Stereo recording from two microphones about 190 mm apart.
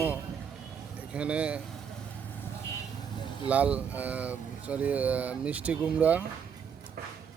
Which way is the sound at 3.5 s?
5° right (ahead or behind).